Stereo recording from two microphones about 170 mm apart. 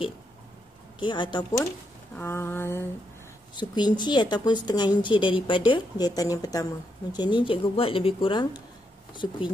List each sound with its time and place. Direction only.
0.9 s speech: 30° left (ahead or behind)
2.1 s a sound: 15° left (ahead or behind)
3.5 s speech: 25° left (ahead or behind)